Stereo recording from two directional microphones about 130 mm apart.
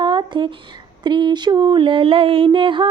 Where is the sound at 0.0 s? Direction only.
35° right (ahead or behind).